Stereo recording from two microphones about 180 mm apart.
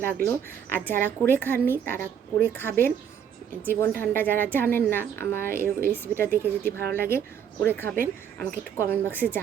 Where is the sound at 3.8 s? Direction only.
10° left (ahead or behind).